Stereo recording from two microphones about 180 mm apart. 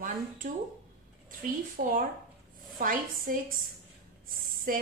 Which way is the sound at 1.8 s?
55° right (ahead or behind).